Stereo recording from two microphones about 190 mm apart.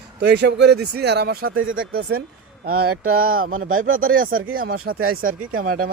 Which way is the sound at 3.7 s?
90° right.